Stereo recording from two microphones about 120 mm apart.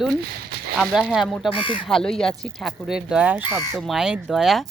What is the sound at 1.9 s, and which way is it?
Speech, 5° left (ahead or behind).